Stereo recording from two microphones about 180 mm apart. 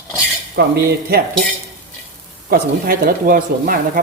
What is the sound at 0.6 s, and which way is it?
Speech, 65° right (ahead or behind).